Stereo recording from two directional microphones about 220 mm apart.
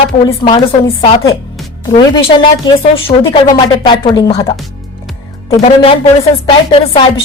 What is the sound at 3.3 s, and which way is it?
A woman's voice, 20° left (ahead or behind).